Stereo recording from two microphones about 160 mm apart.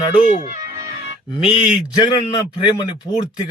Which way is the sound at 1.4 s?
30° left (ahead or behind).